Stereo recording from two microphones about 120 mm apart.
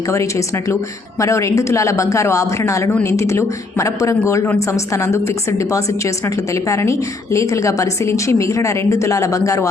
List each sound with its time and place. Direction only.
0.1 s a woman's voice: 25° left (ahead or behind)